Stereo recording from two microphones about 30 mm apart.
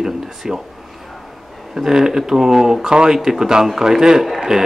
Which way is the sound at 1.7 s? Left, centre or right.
Centre.